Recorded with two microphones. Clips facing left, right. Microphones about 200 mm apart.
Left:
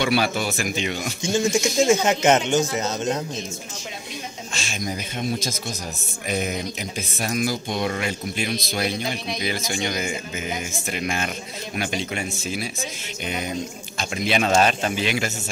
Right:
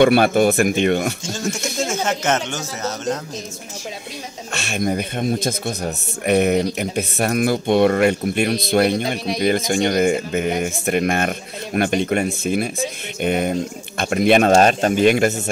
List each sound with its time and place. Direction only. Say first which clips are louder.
0.0 s speech: right 9 dB; 55° right (ahead or behind)
1.2 s speech: left 4 dB; 15° left (ahead or behind)
4.6 s speech: right 9 dB; 60° right (ahead or behind)
14.5 s speech: right 6 dB; 45° right (ahead or behind)